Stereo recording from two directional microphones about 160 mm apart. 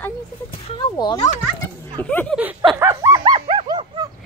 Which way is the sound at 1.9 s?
10° left (ahead or behind).